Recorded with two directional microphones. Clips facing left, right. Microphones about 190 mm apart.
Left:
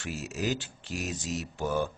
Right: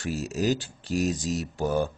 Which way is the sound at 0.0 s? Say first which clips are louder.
Right 6 dB; 35° right (ahead or behind).